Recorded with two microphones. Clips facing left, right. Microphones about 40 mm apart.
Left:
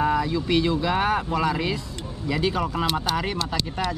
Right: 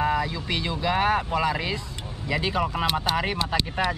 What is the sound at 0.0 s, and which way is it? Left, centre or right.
Speech, centre.